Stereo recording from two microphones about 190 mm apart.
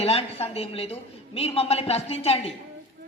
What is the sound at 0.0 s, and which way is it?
A man's voice, 30° left (ahead or behind).